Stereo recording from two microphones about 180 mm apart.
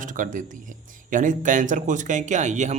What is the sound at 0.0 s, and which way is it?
Speech, 45° right (ahead or behind).